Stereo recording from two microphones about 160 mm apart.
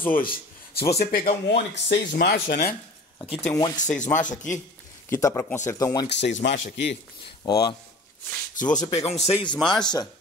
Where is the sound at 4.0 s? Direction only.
50° left (ahead or behind).